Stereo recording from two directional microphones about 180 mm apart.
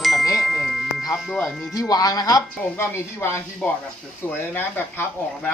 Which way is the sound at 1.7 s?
20° left (ahead or behind).